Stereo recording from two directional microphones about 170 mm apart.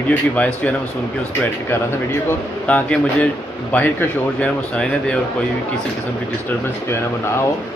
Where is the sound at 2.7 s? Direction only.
10° left (ahead or behind).